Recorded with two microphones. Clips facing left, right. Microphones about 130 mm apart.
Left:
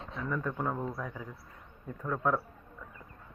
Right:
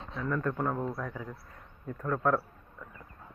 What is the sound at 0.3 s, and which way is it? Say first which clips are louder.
Speech: right 3 dB; 5° left (ahead or behind).